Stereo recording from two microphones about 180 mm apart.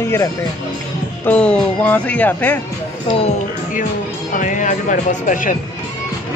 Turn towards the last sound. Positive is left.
turn(degrees=45)  # may be behind; listen again after turning